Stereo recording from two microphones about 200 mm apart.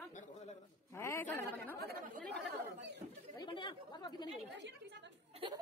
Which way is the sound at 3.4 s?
20° left (ahead or behind).